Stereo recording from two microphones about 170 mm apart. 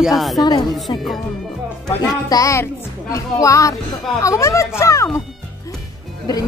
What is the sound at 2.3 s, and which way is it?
A woman's voice, 20° left (ahead or behind).